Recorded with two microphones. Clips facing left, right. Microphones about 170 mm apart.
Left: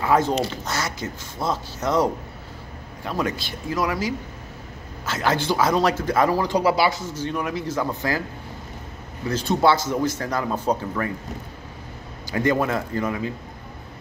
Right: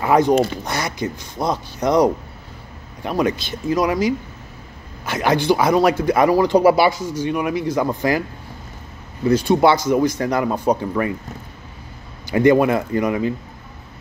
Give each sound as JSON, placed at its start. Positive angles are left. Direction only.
{"t": 0.0, "sound": "speech", "side_deg": -15}
{"t": 6.5, "sound": "a man's voice", "side_deg": -55}
{"t": 7.0, "sound": "speech", "side_deg": -10}
{"t": 9.3, "sound": "speech", "side_deg": -15}
{"t": 12.4, "sound": "speech", "side_deg": -15}